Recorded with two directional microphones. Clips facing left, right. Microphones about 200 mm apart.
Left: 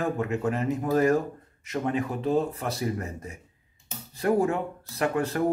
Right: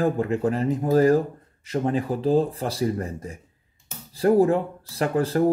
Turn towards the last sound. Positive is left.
turn(degrees=-30)  # may be behind; listen again after turning